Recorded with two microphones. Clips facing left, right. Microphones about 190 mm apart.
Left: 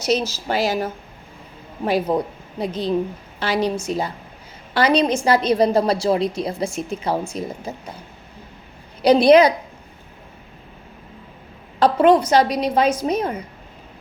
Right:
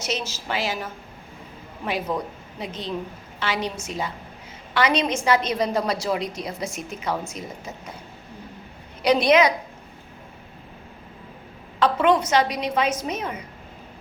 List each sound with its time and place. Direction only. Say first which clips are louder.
0.0 s a woman's voice: left 8 dB; 35° left (ahead or behind)
9.0 s a woman's voice: left 6 dB; 35° left (ahead or behind)
11.8 s a woman's voice: left 5 dB; 35° left (ahead or behind)